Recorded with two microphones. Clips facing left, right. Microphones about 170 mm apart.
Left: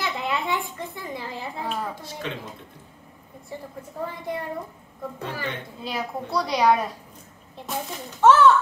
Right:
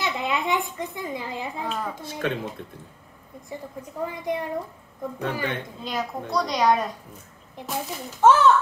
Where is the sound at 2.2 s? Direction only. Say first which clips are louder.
Right 7 dB; 55° right (ahead or behind).